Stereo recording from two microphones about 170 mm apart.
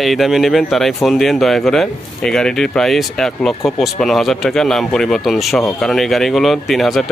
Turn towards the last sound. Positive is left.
turn(degrees=0)  # may be behind; listen again after turning